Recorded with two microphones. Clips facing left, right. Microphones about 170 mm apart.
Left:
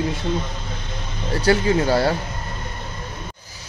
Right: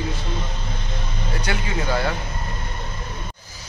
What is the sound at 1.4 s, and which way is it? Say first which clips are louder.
Speech: left 10 dB; 35° left (ahead or behind).